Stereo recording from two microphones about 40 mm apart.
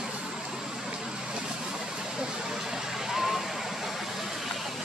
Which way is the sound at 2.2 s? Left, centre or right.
Centre.